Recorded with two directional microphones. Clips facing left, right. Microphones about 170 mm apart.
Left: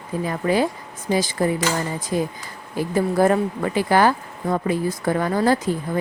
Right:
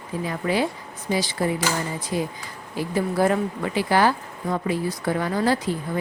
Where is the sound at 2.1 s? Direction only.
45° left (ahead or behind).